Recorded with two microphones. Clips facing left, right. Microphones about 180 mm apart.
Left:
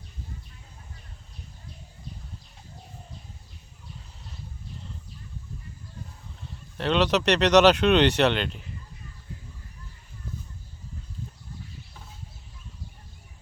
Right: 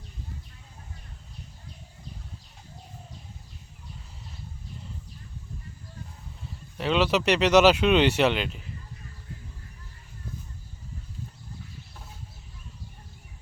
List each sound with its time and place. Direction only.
6.7 s speech: 5° right (ahead or behind)